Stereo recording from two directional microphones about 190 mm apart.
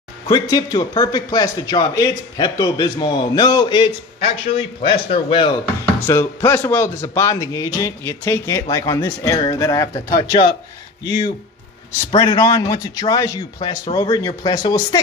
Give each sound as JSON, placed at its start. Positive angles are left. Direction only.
{"t": 0.3, "sound": "a man's voice", "side_deg": 20}
{"t": 6.0, "sound": "a man's voice", "side_deg": 15}